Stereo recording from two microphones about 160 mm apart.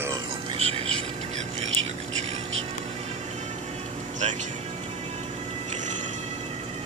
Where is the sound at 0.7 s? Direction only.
40° right (ahead or behind).